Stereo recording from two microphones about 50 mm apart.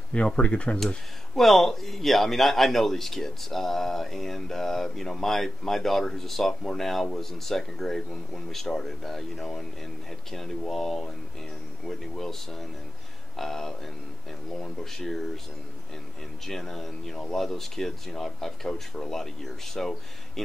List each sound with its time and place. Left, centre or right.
0.1 s speech: left
0.7 s speech: centre
12.2 s speech: centre
16.4 s speech: centre